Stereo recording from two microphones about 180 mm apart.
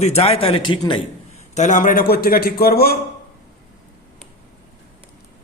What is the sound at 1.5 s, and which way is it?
Speech, 45° left (ahead or behind).